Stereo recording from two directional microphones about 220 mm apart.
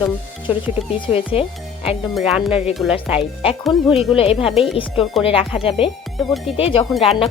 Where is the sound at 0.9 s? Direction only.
25° left (ahead or behind).